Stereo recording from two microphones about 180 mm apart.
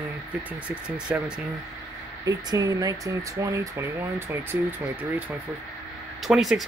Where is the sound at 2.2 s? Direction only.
20° right (ahead or behind).